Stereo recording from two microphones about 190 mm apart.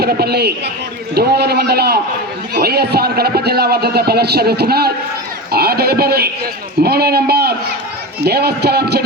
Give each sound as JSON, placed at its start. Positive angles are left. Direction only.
{"t": 0.0, "sound": "speech", "side_deg": -55}